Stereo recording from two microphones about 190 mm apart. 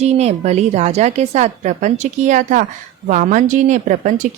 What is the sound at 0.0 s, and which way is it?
Speech, 35° right (ahead or behind).